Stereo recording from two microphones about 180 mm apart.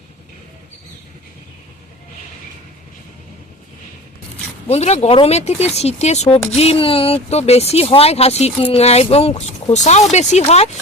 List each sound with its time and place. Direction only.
4.7 s speech: 35° left (ahead or behind)